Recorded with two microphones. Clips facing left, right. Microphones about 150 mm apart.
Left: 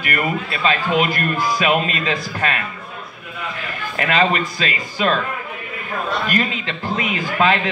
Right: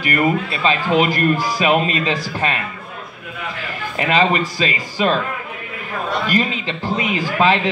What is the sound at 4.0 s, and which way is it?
A man's voice, 25° right (ahead or behind).